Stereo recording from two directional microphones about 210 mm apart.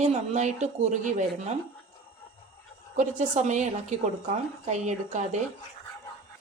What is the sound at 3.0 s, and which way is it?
Speech, 35° right (ahead or behind).